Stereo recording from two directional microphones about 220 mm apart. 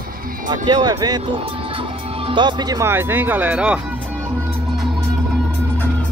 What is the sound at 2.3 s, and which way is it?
Speech, 20° right (ahead or behind).